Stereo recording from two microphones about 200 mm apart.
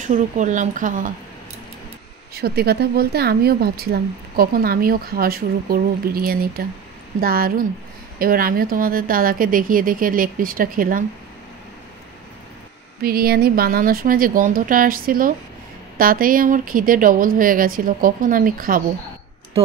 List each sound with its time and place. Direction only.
0.0 s speech: 40° right (ahead or behind)
2.3 s speech: 50° right (ahead or behind)
13.0 s speech: 50° right (ahead or behind)